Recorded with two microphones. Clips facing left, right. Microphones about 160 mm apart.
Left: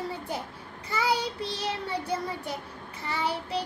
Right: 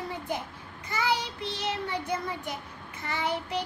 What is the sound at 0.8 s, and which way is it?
A child's voice, 30° left (ahead or behind).